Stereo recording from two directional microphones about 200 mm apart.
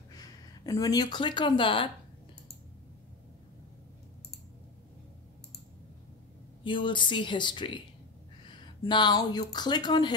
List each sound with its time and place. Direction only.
0.1 s speech: 15° left (ahead or behind)
6.6 s speech: 25° left (ahead or behind)